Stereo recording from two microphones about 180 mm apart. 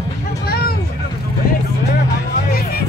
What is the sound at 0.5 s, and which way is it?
Vehicle, 55° left (ahead or behind).